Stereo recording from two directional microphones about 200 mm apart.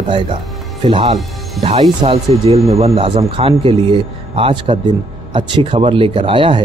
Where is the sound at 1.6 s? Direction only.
30° right (ahead or behind).